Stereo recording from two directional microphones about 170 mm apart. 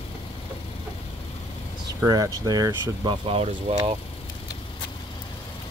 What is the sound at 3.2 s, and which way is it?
Speech, 35° right (ahead or behind).